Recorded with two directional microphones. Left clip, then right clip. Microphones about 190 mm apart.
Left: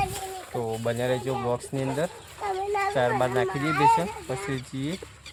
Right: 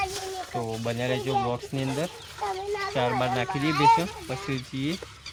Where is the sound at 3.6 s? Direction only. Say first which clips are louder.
Even; 40° left (ahead or behind).